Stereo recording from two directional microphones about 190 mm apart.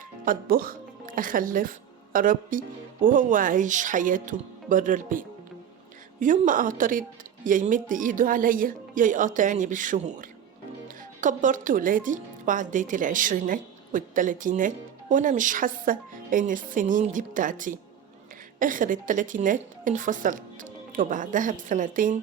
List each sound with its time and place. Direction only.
0.3 s a woman's voice: 50° right (ahead or behind)